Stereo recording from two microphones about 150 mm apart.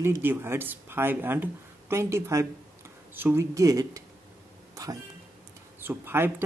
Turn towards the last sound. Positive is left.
turn(degrees=-15)  # may be behind; listen again after turning